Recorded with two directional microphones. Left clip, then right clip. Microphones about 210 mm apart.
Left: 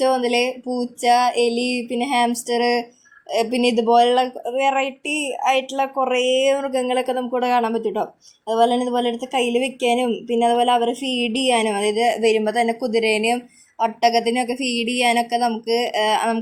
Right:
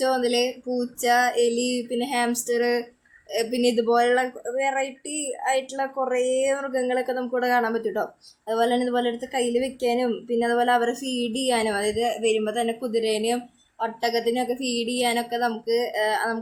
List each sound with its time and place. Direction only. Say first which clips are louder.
0.0 s a woman's voice: left 4 dB; 25° left (ahead or behind)